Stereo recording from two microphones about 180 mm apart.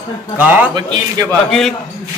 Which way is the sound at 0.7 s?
25° right (ahead or behind).